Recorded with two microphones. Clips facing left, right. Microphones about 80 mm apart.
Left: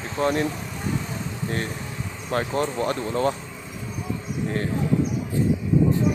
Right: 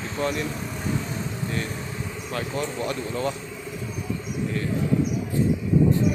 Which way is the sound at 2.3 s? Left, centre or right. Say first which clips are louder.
Left 5 dB; left.